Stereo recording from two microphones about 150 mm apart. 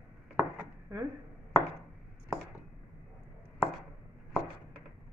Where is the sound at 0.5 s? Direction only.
15° right (ahead or behind).